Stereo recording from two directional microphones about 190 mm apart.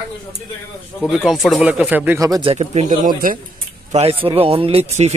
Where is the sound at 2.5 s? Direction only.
40° right (ahead or behind).